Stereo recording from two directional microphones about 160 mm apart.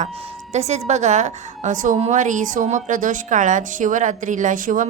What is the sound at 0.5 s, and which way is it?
A woman's voice, 45° right (ahead or behind).